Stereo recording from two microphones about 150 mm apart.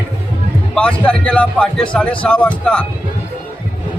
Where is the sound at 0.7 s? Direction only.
5° left (ahead or behind).